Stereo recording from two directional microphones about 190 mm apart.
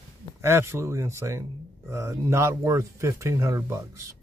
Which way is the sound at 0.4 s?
15° right (ahead or behind).